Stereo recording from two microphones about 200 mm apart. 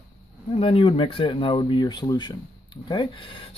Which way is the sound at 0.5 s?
25° left (ahead or behind).